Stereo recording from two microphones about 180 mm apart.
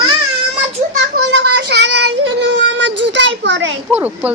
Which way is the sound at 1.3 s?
70° right (ahead or behind).